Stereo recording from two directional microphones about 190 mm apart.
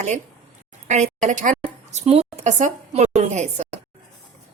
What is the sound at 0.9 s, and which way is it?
A woman's voice, 40° right (ahead or behind).